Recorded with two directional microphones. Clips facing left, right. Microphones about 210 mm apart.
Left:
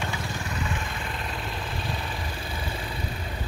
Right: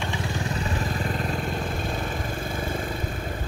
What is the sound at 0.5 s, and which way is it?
Vehicle, 35° right (ahead or behind).